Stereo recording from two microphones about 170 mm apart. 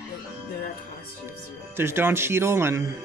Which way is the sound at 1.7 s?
15° right (ahead or behind).